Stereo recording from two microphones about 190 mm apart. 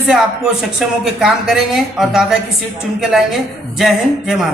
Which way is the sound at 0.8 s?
Centre (ahead or behind).